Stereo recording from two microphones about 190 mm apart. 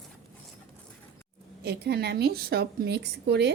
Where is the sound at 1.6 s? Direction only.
60° right (ahead or behind).